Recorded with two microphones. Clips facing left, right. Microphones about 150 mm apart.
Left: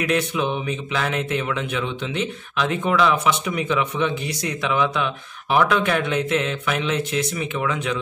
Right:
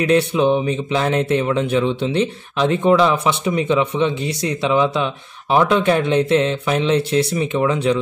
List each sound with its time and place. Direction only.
0.0 s speech: 30° right (ahead or behind)